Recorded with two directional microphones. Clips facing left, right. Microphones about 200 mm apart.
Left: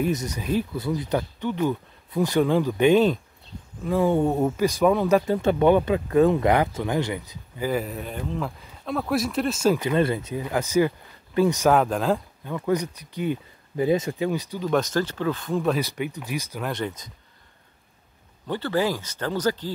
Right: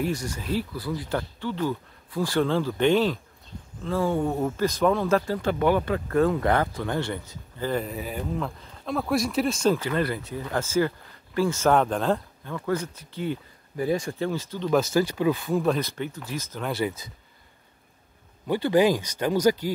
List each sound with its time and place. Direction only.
0.0 s speech: 20° left (ahead or behind); by 9.8 s 5° left (ahead or behind)
9.8 s speech: 20° left (ahead or behind)
11.7 s speech: 5° left (ahead or behind)
12.5 s speech: 15° left (ahead or behind)
14.7 s speech: 5° right (ahead or behind)
15.8 s speech: 15° left (ahead or behind)
16.6 s speech: 5° right (ahead or behind)
18.5 s speech: 15° right (ahead or behind)